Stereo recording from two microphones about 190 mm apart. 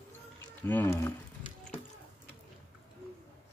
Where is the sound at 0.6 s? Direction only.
10° left (ahead or behind).